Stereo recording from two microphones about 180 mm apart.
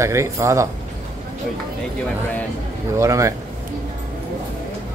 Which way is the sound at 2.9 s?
15° right (ahead or behind).